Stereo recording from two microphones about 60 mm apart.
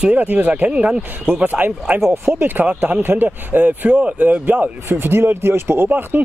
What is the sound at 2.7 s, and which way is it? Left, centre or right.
Speech, right.